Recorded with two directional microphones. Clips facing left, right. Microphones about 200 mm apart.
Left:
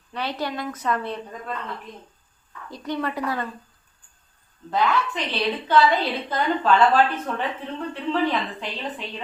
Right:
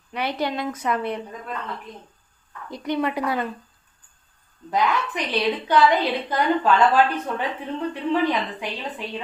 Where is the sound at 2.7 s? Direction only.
15° right (ahead or behind).